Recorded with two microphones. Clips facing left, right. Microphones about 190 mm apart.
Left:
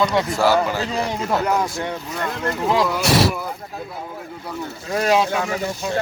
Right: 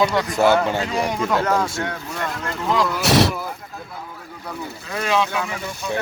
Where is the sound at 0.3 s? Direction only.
25° right (ahead or behind).